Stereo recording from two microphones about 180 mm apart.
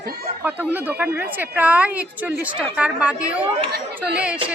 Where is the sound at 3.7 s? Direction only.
65° right (ahead or behind).